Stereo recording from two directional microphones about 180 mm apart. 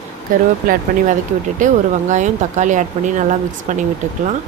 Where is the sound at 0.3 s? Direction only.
50° right (ahead or behind).